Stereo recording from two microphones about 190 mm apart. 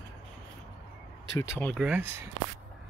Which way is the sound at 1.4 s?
10° left (ahead or behind).